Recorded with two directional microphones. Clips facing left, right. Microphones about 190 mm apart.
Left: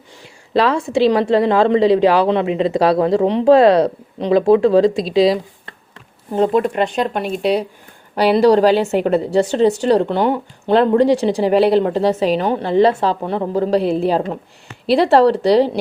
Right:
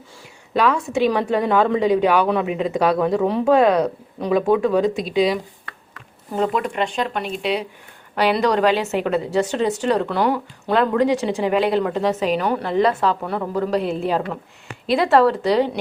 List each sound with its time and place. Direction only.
0.5 s a woman's voice: 30° left (ahead or behind)